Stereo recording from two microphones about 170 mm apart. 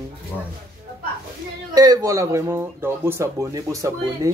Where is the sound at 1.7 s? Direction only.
20° right (ahead or behind).